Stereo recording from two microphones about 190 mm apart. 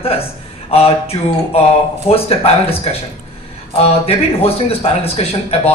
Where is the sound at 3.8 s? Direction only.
30° left (ahead or behind).